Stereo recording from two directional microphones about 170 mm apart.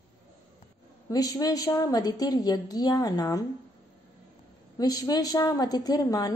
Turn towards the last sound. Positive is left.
turn(degrees=20)  # may be behind; listen again after turning